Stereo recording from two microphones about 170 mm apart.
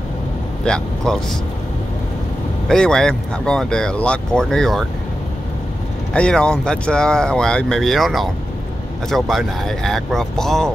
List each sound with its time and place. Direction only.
0.7 s speech: 5° left (ahead or behind)
2.7 s speech: 5° left (ahead or behind)
6.1 s speech: 5° left (ahead or behind)